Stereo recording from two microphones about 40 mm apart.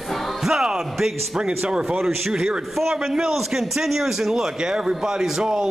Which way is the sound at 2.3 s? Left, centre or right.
Centre.